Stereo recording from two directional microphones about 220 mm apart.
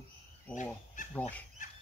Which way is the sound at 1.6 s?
35° left (ahead or behind).